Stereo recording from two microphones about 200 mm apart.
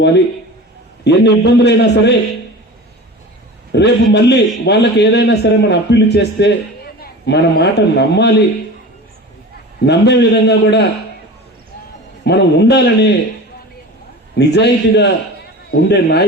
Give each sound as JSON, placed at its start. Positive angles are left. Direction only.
{"t": 1.0, "sound": "a man's voice", "side_deg": 55}
{"t": 3.7, "sound": "a man's voice", "side_deg": 60}
{"t": 9.8, "sound": "a man's voice", "side_deg": 60}
{"t": 12.2, "sound": "a man's voice", "side_deg": 55}
{"t": 14.3, "sound": "a man's voice", "side_deg": 55}